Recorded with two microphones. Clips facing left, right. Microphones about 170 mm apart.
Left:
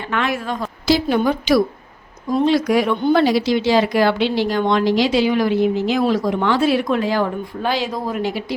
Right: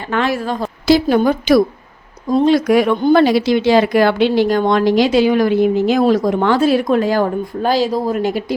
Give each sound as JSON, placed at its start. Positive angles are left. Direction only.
{"t": 0.1, "sound": "a woman's voice", "side_deg": -35}
{"t": 0.9, "sound": "speech", "side_deg": -50}